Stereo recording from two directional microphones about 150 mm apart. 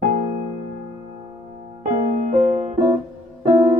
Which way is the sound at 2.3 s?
50° right (ahead or behind).